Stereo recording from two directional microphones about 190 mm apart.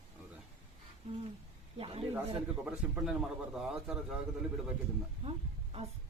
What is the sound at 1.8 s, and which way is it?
Speech, 30° right (ahead or behind).